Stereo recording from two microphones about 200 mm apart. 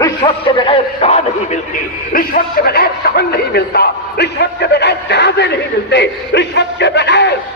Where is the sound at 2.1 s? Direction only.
45° left (ahead or behind).